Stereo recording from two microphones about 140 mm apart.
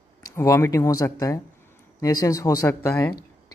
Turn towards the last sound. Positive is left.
turn(degrees=20)  # may be behind; listen again after turning